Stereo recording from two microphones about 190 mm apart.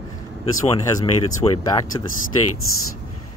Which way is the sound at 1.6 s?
20° left (ahead or behind).